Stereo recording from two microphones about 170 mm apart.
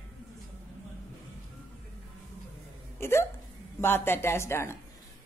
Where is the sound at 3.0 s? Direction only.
15° left (ahead or behind).